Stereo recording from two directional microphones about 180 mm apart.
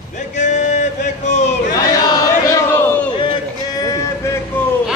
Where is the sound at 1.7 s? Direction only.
20° left (ahead or behind).